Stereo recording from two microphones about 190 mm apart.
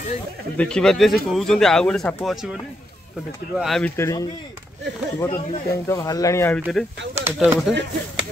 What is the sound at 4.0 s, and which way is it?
Speech, 20° left (ahead or behind).